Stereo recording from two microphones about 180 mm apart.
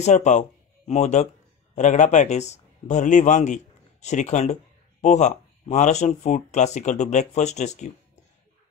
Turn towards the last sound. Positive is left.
turn(degrees=40)  # may be behind; listen again after turning